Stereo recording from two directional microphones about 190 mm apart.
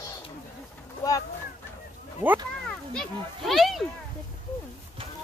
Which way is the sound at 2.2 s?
10° right (ahead or behind).